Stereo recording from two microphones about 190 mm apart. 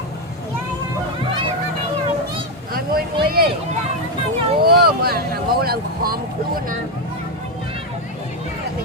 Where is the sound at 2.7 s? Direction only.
50° right (ahead or behind).